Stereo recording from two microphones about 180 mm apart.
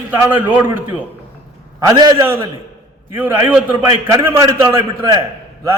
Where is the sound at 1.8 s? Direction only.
20° right (ahead or behind).